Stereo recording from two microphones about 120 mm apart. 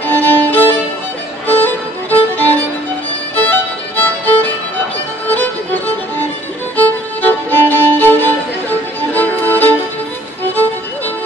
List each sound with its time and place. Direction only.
0.0 s violin: 15° left (ahead or behind)
1.5 s music: 15° left (ahead or behind)
7.2 s violin: 15° left (ahead or behind)
9.1 s music: 15° left (ahead or behind)